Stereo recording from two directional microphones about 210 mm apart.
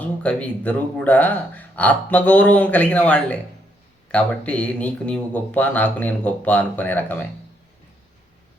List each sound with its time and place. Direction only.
0.0 s speech: 5° left (ahead or behind)